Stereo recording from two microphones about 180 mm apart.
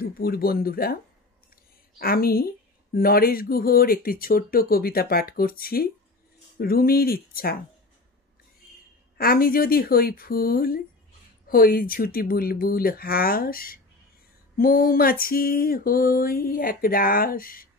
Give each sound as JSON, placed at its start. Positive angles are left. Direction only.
{"t": 0.0, "sound": "speech", "side_deg": 60}
{"t": 2.0, "sound": "speech", "side_deg": 55}
{"t": 9.2, "sound": "speech", "side_deg": 55}
{"t": 14.6, "sound": "a sound", "side_deg": 50}